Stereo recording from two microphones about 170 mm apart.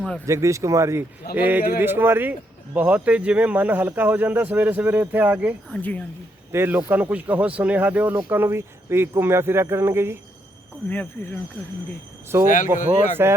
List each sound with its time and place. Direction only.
0.3 s speech: 15° right (ahead or behind)
5.6 s speech: 5° left (ahead or behind)
6.5 s speech: 15° right (ahead or behind)
10.8 s speech: 10° left (ahead or behind)
12.5 s speech: 50° left (ahead or behind)